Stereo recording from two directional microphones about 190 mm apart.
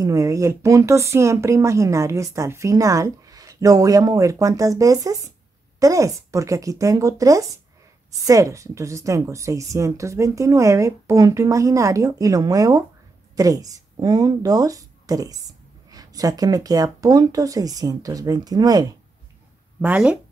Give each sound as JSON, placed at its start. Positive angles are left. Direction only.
{"t": 0.0, "sound": "a woman's voice", "side_deg": -15}
{"t": 19.8, "sound": "speech", "side_deg": -5}